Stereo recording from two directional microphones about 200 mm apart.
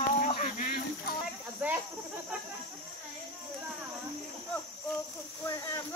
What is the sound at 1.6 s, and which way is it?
Cricket, 10° right (ahead or behind).